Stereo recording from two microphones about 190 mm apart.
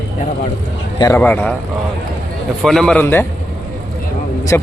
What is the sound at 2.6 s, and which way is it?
Speech, 5° left (ahead or behind).